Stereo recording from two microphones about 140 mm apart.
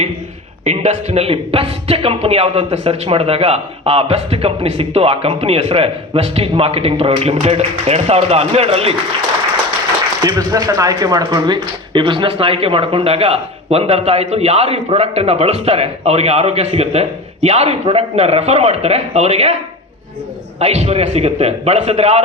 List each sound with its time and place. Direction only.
0.6 s speech: 50° right (ahead or behind)
10.2 s speech: 25° right (ahead or behind); by 19.5 s 50° right (ahead or behind)
20.6 s speech: 50° right (ahead or behind)